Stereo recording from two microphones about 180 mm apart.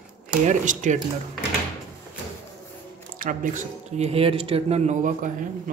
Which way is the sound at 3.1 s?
50° right (ahead or behind).